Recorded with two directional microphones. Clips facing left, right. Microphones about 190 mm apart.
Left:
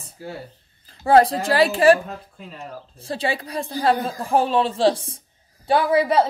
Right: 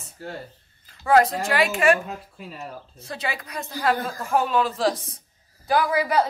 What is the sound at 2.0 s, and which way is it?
Speech, 5° right (ahead or behind).